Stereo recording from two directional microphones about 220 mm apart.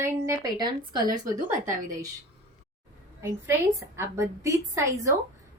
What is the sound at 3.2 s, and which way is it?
A woman's voice, 10° right (ahead or behind).